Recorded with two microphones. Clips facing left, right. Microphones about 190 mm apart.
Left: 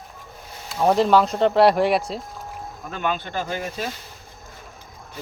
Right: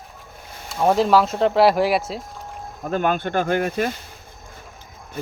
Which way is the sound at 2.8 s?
45° right (ahead or behind).